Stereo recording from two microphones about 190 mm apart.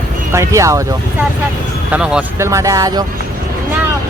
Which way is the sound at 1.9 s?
5° right (ahead or behind).